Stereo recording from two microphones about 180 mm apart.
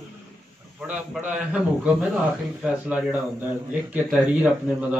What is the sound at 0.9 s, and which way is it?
Speech, 10° right (ahead or behind).